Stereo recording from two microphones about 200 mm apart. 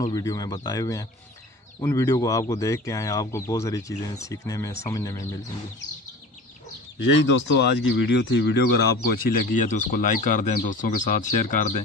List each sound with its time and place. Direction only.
0.0 s speech: 20° left (ahead or behind)
7.2 s speech: 65° left (ahead or behind); by 11.7 s 40° left (ahead or behind)